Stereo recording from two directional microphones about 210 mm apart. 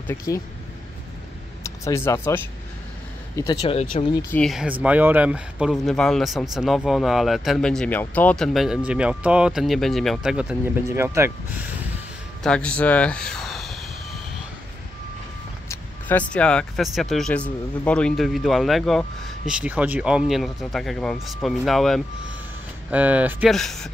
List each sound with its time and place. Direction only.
0.0 s speech: 15° left (ahead or behind)
1.6 s speech: 10° left (ahead or behind)
3.3 s speech: 20° left (ahead or behind)
4.4 s speech: centre (ahead or behind)
12.4 s speech: 5° left (ahead or behind)
15.7 s speech: 10° left (ahead or behind)